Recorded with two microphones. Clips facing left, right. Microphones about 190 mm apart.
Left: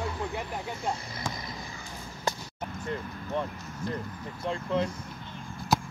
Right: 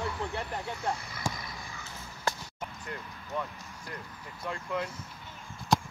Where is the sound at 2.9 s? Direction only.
25° left (ahead or behind).